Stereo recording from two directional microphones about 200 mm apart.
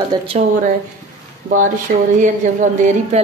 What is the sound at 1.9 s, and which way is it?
A woman's voice, 45° right (ahead or behind).